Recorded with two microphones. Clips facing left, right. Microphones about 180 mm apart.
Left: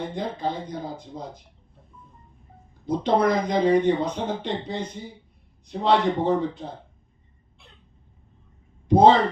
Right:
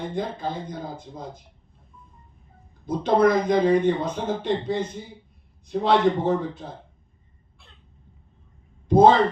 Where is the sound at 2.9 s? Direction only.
50° right (ahead or behind).